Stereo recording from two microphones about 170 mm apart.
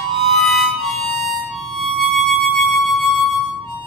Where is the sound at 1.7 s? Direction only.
Centre (ahead or behind).